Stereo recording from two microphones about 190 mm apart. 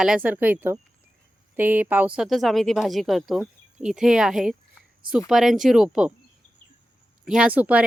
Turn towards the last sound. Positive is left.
turn(degrees=-10)  # may be behind; listen again after turning